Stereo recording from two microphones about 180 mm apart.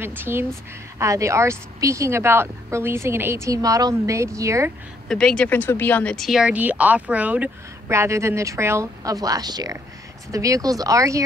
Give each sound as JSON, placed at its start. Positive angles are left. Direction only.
{"t": 0.0, "sound": "speech", "side_deg": -10}
{"t": 5.0, "sound": "speech", "side_deg": 5}